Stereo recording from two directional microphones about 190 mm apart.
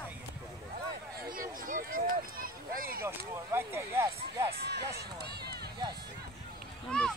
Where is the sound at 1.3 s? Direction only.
45° right (ahead or behind).